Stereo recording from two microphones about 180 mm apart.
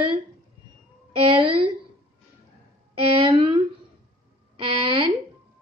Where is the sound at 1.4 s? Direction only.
25° right (ahead or behind).